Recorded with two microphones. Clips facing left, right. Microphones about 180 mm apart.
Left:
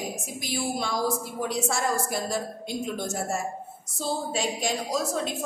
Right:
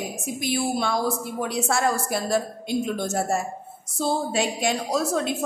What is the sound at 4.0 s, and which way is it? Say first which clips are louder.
A woman's voice: right 5 dB; 65° right (ahead or behind).